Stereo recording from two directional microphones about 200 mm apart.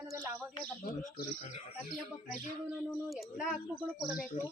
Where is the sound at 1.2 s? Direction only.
40° left (ahead or behind).